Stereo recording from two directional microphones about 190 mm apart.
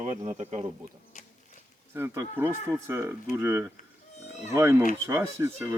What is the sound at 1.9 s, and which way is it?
Speech, 15° right (ahead or behind).